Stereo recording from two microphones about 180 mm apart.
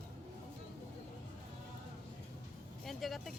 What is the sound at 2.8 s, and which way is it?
Vehicle, centre (ahead or behind).